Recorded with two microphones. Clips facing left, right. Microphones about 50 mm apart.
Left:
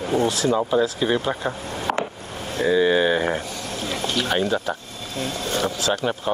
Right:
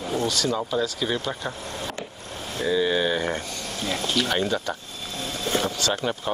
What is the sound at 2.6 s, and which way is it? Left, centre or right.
Speech, centre.